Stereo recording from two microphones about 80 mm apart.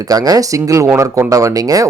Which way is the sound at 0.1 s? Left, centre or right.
Right.